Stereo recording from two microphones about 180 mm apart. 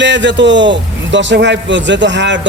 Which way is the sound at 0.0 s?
80° right.